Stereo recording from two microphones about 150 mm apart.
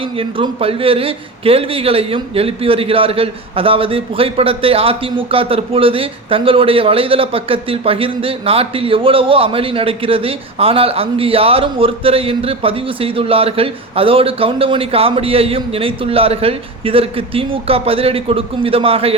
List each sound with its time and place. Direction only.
0.0 s a man's voice: 35° right (ahead or behind)